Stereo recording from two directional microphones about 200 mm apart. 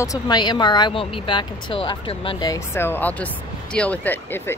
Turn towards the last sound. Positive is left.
turn(degrees=10)  # may be behind; listen again after turning